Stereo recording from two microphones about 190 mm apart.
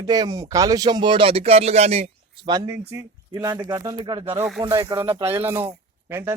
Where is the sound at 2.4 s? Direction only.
20° right (ahead or behind).